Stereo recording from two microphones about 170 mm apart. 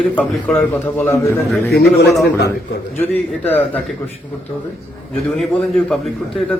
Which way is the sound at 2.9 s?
10° left (ahead or behind).